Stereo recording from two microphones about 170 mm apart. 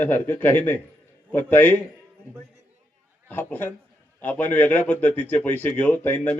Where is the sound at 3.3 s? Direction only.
10° left (ahead or behind).